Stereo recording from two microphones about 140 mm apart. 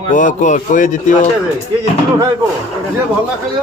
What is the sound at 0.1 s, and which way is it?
Speech, 65° left (ahead or behind).